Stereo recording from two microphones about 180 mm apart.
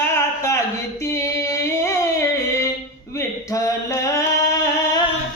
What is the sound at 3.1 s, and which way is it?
Singing, 15° left (ahead or behind).